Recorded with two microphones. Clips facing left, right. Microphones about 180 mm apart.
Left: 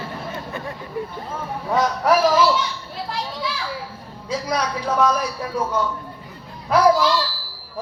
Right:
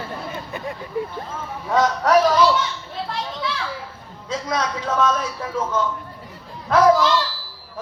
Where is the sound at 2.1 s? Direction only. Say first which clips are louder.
Even; 20° right (ahead or behind).